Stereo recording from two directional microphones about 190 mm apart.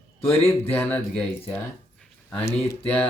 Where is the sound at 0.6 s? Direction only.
10° left (ahead or behind).